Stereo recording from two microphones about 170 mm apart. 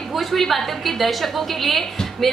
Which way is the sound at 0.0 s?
Centre (ahead or behind).